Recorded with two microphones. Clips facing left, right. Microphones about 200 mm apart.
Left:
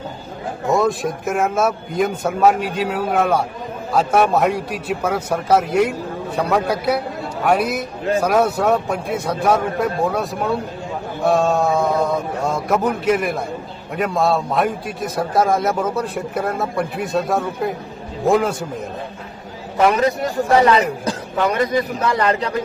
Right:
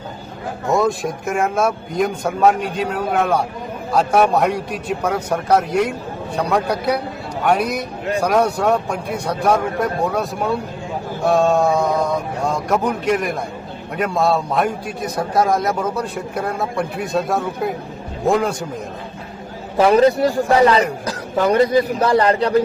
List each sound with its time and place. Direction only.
0.7 s a man's voice: centre (ahead or behind)
19.7 s speech: 30° right (ahead or behind)